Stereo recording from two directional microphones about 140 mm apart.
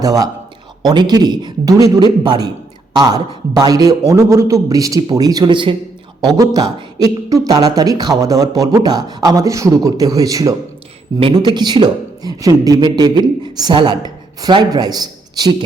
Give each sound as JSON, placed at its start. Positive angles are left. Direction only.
{"t": 0.0, "sound": "speech", "side_deg": -25}